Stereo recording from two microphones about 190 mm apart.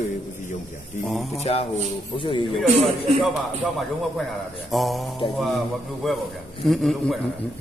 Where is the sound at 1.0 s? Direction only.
Centre (ahead or behind).